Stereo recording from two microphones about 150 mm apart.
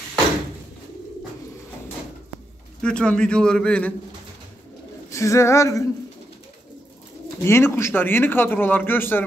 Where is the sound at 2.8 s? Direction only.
5° left (ahead or behind).